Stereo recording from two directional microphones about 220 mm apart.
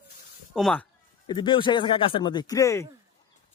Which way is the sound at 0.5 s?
5° left (ahead or behind).